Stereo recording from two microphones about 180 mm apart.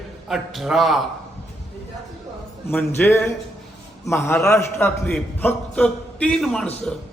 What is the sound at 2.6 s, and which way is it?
A man's voice, 10° left (ahead or behind).